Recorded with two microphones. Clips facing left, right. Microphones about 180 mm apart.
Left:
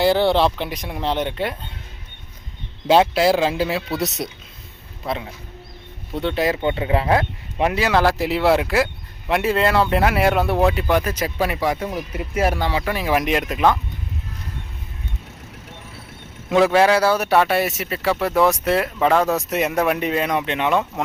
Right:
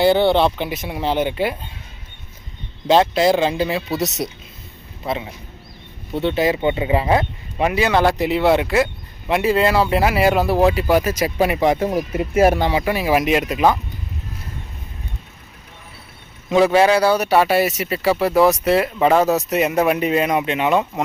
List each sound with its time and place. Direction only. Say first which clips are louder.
0.0 s speech: right 2 dB; centre (ahead or behind)
2.8 s speech: right 1 dB; 5° left (ahead or behind)
16.5 s speech: right 1 dB; centre (ahead or behind)